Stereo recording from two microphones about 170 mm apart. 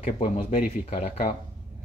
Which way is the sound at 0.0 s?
35° left (ahead or behind).